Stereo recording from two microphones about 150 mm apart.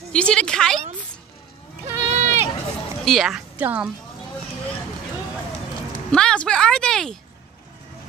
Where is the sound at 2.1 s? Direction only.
50° right (ahead or behind).